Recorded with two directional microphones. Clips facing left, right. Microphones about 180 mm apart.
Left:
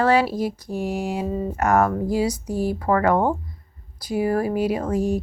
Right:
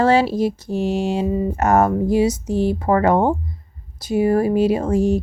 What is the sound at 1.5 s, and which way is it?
Speech, 25° right (ahead or behind).